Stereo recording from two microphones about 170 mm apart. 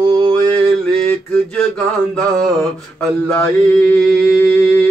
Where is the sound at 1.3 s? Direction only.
5° left (ahead or behind).